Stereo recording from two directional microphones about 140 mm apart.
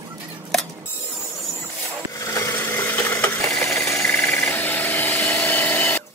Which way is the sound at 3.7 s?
Centre (ahead or behind).